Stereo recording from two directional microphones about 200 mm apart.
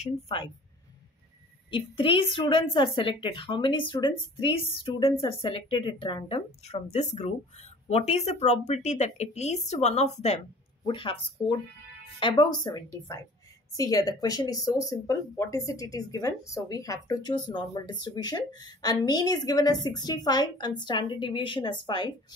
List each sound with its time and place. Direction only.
0.0 s a woman's voice: 25° left (ahead or behind)
1.7 s a woman's voice: 25° left (ahead or behind)